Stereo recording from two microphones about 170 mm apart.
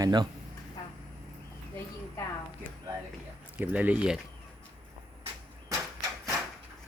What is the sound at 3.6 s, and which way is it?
Speech, 10° right (ahead or behind).